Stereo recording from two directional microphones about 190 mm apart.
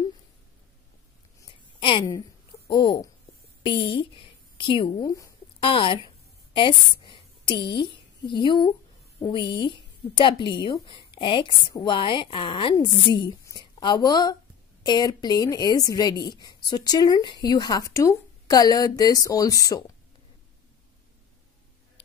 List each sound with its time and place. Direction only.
1.8 s a woman's voice: 25° left (ahead or behind)
5.7 s a sound: 30° left (ahead or behind)
7.5 s a woman's voice: 65° left (ahead or behind)
8.3 s speech: 25° left (ahead or behind)